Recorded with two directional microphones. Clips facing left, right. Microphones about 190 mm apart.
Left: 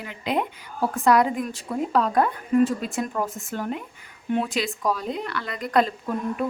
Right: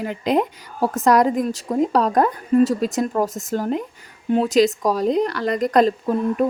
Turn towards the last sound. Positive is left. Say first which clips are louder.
# right 7 dB
turn(degrees=-40)  # may be behind; listen again after turning